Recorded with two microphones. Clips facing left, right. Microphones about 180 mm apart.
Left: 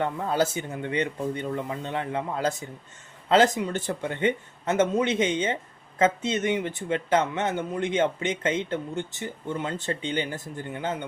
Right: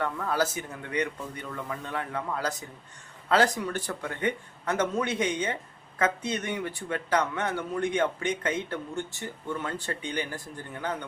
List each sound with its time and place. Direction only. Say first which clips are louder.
0.0 s speech: left 3 dB; 25° left (ahead or behind)